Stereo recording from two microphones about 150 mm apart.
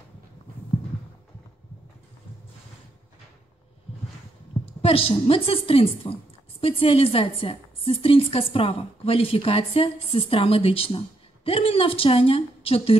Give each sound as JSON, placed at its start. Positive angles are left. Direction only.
{"t": 4.8, "sound": "a woman's voice", "side_deg": 40}